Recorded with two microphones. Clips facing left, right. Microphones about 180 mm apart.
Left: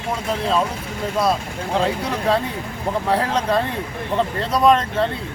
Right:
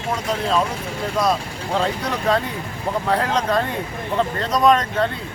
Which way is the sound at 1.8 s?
5° left (ahead or behind).